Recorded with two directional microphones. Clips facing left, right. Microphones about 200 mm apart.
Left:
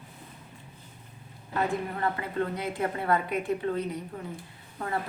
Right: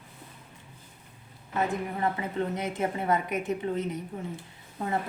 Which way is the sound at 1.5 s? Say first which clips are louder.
Even; 20° right (ahead or behind).